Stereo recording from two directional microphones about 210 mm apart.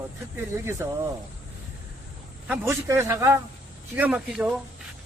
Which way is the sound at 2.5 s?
10° right (ahead or behind).